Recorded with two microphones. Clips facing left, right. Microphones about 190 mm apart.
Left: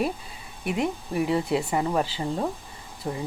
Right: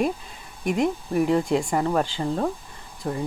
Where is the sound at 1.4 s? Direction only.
5° left (ahead or behind).